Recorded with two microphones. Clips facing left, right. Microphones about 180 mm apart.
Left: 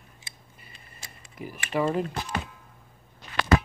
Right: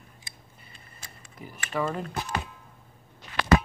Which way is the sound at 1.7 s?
20° left (ahead or behind).